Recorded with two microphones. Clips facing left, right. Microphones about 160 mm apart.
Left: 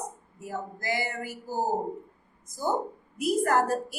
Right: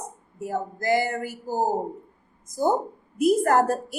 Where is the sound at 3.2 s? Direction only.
45° right (ahead or behind).